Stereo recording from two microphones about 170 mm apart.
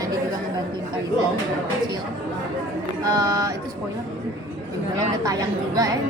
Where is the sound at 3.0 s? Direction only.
25° right (ahead or behind).